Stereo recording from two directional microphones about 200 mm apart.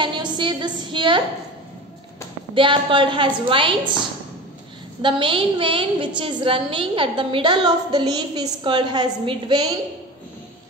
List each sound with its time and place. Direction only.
0.0 s a woman's voice: 25° right (ahead or behind)
2.5 s a woman's voice: 25° right (ahead or behind)
5.0 s a woman's voice: 25° right (ahead or behind)